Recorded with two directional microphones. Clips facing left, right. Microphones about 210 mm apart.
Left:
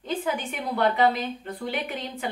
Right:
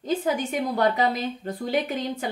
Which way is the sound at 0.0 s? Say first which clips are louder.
Right 4 dB; 40° right (ahead or behind).